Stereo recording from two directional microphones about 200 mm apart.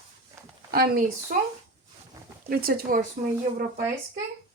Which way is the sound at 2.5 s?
50° right (ahead or behind).